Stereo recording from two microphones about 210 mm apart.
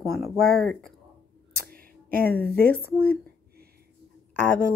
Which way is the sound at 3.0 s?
45° right (ahead or behind).